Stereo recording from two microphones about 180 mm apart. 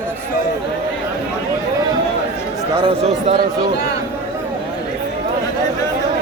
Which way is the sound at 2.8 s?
35° right (ahead or behind).